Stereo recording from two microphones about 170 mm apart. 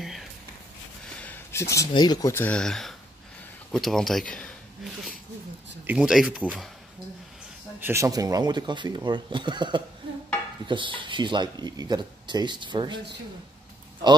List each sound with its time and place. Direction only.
0.0 s a sound: centre (ahead or behind)
1.1 s speech: 10° left (ahead or behind)
5.9 s speech: 5° right (ahead or behind)
7.8 s speech: 15° right (ahead or behind)